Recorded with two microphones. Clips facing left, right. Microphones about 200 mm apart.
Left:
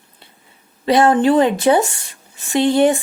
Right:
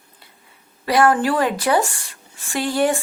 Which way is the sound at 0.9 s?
25° left (ahead or behind).